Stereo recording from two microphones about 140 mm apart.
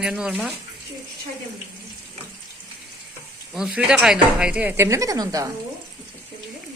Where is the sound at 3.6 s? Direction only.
5° right (ahead or behind); by 5.4 s 25° right (ahead or behind).